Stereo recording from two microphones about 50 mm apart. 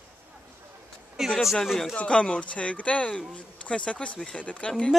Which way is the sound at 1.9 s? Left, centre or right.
Left.